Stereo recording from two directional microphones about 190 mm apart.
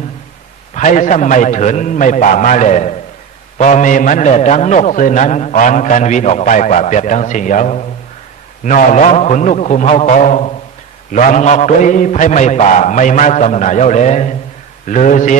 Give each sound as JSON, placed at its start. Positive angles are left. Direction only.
{"t": 0.7, "sound": "a man's voice", "side_deg": 40}